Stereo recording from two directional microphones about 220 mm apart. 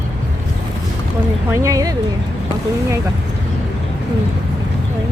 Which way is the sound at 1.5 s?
15° right (ahead or behind).